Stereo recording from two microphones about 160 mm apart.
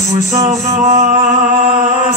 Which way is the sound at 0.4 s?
40° right (ahead or behind).